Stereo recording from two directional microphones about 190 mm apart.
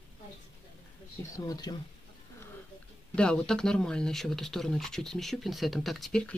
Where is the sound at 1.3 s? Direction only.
20° left (ahead or behind).